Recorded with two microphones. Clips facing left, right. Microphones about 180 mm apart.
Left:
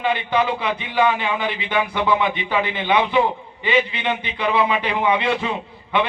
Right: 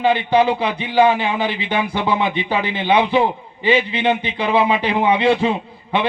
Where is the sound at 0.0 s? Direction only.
30° right (ahead or behind).